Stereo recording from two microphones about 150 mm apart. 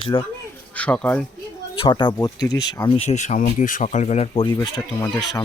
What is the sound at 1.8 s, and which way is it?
Speech, 35° left (ahead or behind).